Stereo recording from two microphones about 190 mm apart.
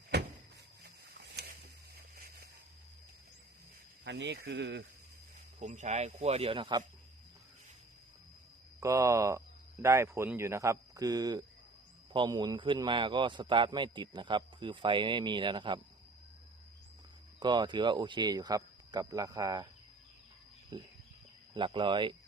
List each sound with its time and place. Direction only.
0.8 s a sound: 60° right (ahead or behind)
4.0 s speech: 65° right (ahead or behind)
5.5 s speech: 40° right (ahead or behind)
8.8 s a man's voice: 15° right (ahead or behind)
17.4 s a man's voice: 25° right (ahead or behind)
20.7 s a man's voice: 20° right (ahead or behind)